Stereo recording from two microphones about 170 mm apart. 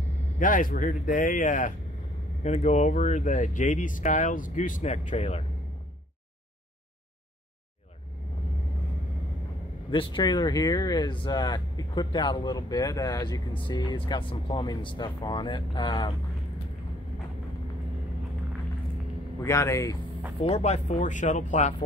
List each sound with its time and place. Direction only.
0.4 s speech: 50° left (ahead or behind)
9.8 s speech: 30° left (ahead or behind)
19.4 s speech: 20° left (ahead or behind)
20.4 s speech: 40° left (ahead or behind)